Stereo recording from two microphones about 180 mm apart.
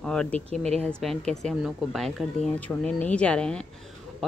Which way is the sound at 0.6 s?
35° right (ahead or behind).